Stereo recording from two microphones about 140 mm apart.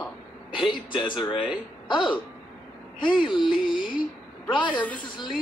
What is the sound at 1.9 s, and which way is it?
A woman's voice, 35° left (ahead or behind).